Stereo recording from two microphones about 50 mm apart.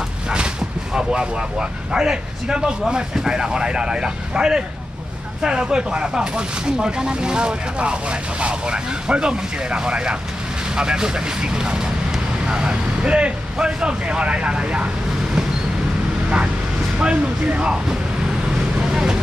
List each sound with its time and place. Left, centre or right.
0.9 s speech: centre
17.0 s speech: right
18.8 s vehicle: centre